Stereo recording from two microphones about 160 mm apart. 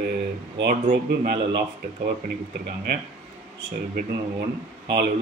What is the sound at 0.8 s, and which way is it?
Speech, 55° right (ahead or behind).